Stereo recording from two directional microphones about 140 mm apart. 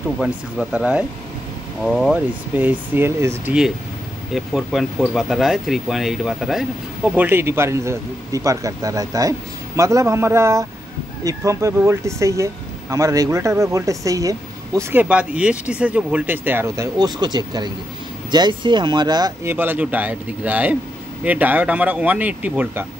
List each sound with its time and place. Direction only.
0.2 s speech: 5° right (ahead or behind)
4.3 s speech: centre (ahead or behind)
7.1 s speech: 15° right (ahead or behind); by 19.3 s 30° right (ahead or behind)
19.4 s speech: 15° right (ahead or behind)